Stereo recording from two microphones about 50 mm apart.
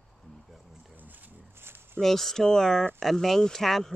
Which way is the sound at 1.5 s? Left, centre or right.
Right.